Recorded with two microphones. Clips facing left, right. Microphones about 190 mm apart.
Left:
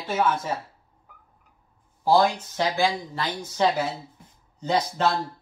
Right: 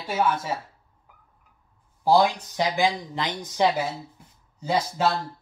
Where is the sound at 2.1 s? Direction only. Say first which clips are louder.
Even; 15° right (ahead or behind).